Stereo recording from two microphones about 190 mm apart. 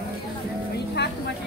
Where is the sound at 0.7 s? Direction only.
60° left (ahead or behind).